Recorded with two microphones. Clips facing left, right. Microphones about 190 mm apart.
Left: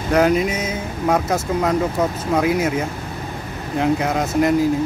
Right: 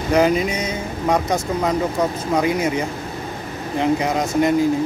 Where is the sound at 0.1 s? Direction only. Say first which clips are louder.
Left 1 dB; centre (ahead or behind).